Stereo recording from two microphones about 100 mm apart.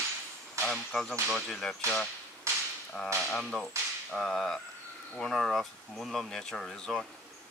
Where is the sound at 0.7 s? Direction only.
5° left (ahead or behind).